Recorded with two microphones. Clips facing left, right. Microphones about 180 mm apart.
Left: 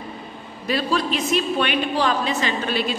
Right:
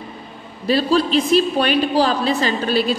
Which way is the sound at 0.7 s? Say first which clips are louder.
Right 6 dB; 30° right (ahead or behind).